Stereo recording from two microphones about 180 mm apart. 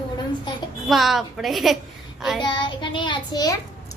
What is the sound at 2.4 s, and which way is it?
A child's voice, 25° left (ahead or behind).